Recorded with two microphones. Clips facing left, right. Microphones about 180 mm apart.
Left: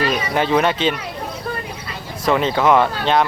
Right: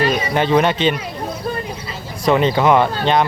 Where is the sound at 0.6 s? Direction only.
5° left (ahead or behind).